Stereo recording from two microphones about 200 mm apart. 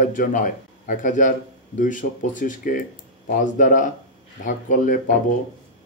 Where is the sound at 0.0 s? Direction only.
40° left (ahead or behind).